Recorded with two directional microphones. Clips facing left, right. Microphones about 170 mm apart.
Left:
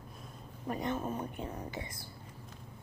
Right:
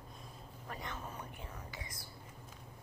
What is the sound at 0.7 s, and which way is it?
Speech, 20° left (ahead or behind).